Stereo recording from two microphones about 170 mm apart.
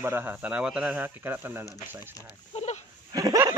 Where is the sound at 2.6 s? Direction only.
40° left (ahead or behind).